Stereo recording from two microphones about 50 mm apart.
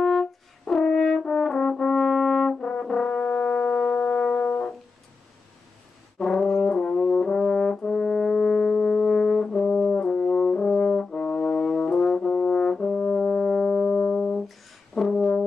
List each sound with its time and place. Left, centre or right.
0.7 s brass instrument: centre
2.9 s music: centre
6.1 s brass instrument: centre
12.9 s brass instrument: centre